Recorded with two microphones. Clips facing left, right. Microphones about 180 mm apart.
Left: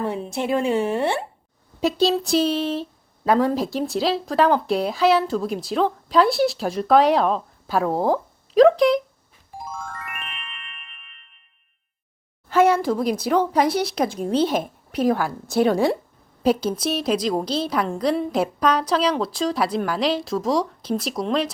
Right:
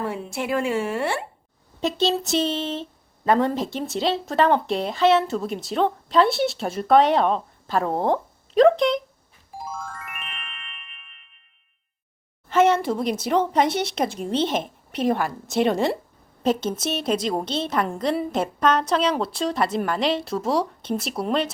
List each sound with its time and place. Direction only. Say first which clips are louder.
0.8 s speech: left 3 dB; 25° left (ahead or behind)
1.8 s speech: left 3 dB; centre (ahead or behind)
9.5 s music: even; centre (ahead or behind)
12.5 s speech: left 1 dB; centre (ahead or behind)